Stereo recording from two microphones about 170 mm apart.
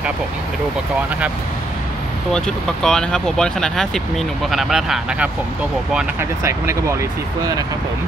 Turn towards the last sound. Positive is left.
turn(degrees=-20)  # may be behind; listen again after turning